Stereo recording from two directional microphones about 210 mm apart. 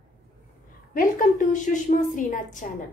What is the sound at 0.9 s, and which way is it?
A woman's voice, 40° left (ahead or behind).